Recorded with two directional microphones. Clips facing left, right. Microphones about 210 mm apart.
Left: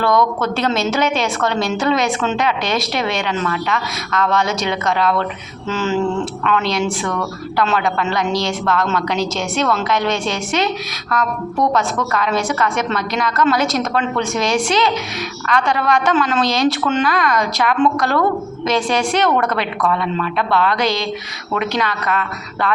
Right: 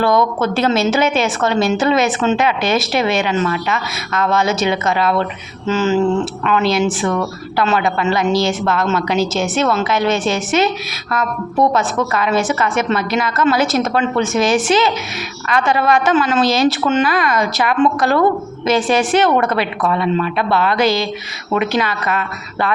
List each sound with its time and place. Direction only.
0.0 s a woman's voice: 5° right (ahead or behind)